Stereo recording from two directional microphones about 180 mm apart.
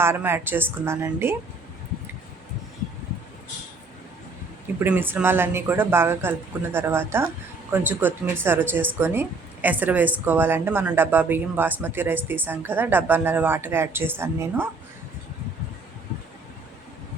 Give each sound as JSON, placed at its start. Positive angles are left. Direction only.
{"t": 0.0, "sound": "speech", "side_deg": -15}
{"t": 4.8, "sound": "speech", "side_deg": -10}